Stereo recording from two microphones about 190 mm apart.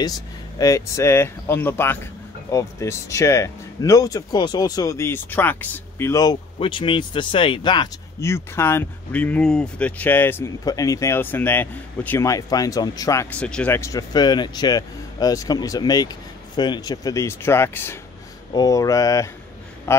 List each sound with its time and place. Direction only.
0.6 s a man's voice: 15° left (ahead or behind)